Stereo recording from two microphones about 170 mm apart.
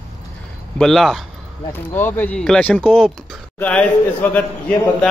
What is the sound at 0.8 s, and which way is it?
Speech, centre (ahead or behind).